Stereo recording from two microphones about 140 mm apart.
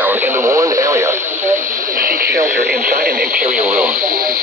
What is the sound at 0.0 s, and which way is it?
Radio, 15° right (ahead or behind).